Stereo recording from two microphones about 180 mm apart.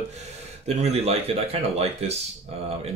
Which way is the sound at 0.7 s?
35° right (ahead or behind).